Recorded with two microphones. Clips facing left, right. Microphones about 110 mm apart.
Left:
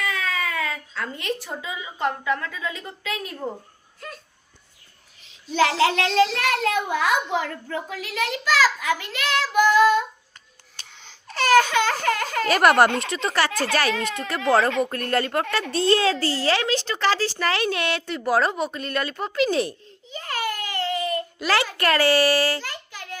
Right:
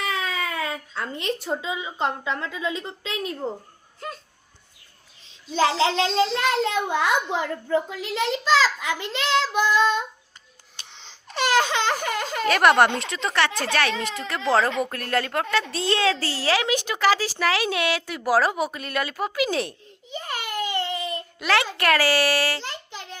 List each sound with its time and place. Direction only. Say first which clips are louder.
0.0 s speech: even; 25° right (ahead or behind)
5.5 s a child's voice: left 1 dB; 30° right (ahead or behind)
10.9 s baby cry: even; 20° right (ahead or behind)
12.5 s a woman's voice: even; centre (ahead or behind)
20.1 s baby cry: left 3 dB; 15° right (ahead or behind)
21.3 s a woman's voice: right 3 dB; centre (ahead or behind)
22.6 s child singing: right 1 dB; 25° right (ahead or behind)